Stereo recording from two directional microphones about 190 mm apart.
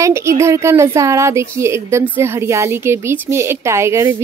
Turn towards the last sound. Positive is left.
turn(degrees=-15)  # may be behind; listen again after turning